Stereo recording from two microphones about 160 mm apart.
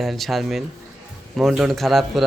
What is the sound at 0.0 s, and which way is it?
Speech, centre (ahead or behind).